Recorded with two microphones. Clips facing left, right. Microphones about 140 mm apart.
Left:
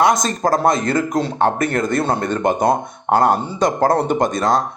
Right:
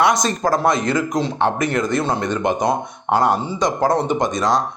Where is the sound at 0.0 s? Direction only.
45° left (ahead or behind).